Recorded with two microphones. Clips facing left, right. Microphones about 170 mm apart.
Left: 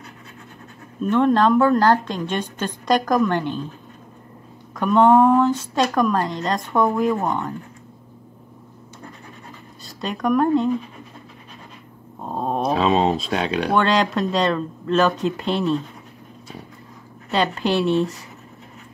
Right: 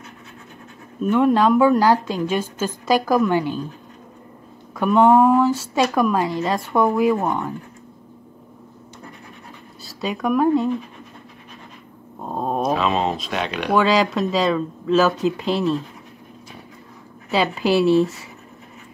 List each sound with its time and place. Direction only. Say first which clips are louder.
1.0 s speech: right 1 dB; 10° right (ahead or behind)
4.7 s speech: even; 5° right (ahead or behind)
9.8 s speech: even; 5° right (ahead or behind)
12.2 s speech: even; centre (ahead or behind)
12.7 s speech: left 3 dB; 30° left (ahead or behind)
13.7 s speech: right 3 dB; 5° right (ahead or behind)
17.3 s speech: right 2 dB; 5° right (ahead or behind)